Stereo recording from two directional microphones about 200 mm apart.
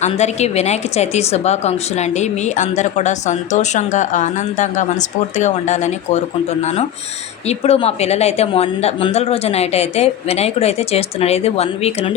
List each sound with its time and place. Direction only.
0.0 s a woman's voice: 35° left (ahead or behind)
7.4 s a woman's voice: 30° left (ahead or behind)